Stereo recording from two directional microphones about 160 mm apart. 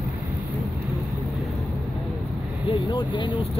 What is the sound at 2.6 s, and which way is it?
Speech, 30° left (ahead or behind).